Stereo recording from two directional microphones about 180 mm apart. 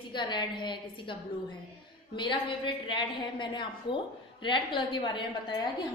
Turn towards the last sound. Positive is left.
turn(degrees=25)  # may be behind; listen again after turning